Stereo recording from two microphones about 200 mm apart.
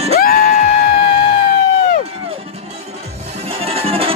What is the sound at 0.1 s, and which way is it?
Music, 45° left (ahead or behind).